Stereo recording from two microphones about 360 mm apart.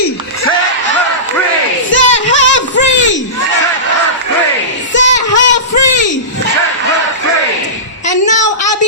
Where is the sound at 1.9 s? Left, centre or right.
Left.